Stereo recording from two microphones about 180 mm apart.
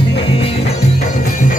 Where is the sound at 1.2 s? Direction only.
45° left (ahead or behind).